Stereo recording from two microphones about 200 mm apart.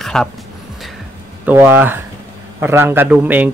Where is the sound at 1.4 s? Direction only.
10° right (ahead or behind).